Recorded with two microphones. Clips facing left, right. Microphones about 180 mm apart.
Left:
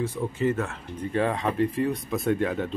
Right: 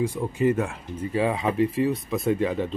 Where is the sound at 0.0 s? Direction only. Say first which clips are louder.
Right 3 dB; 15° right (ahead or behind).